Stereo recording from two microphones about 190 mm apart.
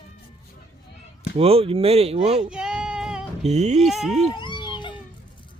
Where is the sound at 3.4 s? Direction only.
35° right (ahead or behind).